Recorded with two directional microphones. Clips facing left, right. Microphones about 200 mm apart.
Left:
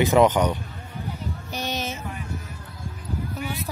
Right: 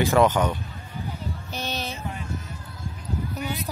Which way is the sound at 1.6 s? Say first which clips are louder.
Left 2 dB; 15° left (ahead or behind).